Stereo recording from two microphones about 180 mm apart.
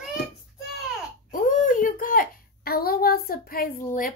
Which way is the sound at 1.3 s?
45° left (ahead or behind).